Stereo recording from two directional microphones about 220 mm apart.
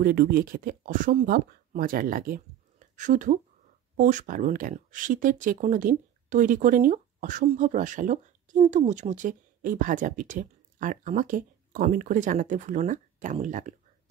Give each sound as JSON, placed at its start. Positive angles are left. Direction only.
{"t": 0.0, "sound": "speech", "side_deg": -40}